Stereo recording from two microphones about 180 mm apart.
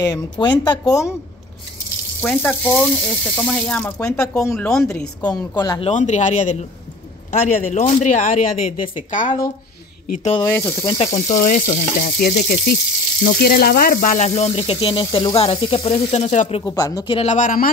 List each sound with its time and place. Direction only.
0.0 s speech: 20° left (ahead or behind)
2.2 s speech: 10° left (ahead or behind)
4.4 s speech: 15° left (ahead or behind)
4.6 s a woman's voice: 5° left (ahead or behind)
5.3 s speech: 20° left (ahead or behind)
5.9 s speech: 40° left (ahead or behind)
10.5 s speech: 15° left (ahead or behind)
11.2 s speech: 45° left (ahead or behind)
16.6 s speech: 20° left (ahead or behind)
17.2 s speech: 45° left (ahead or behind)